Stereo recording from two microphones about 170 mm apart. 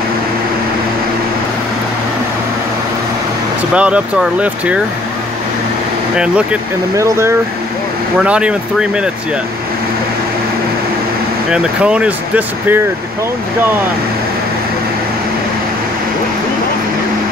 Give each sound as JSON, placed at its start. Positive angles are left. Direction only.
{"t": 3.7, "sound": "speech", "side_deg": -5}
{"t": 6.1, "sound": "speech", "side_deg": -5}
{"t": 7.0, "sound": "speech", "side_deg": -15}
{"t": 8.2, "sound": "speech", "side_deg": -5}
{"t": 11.5, "sound": "speech", "side_deg": -5}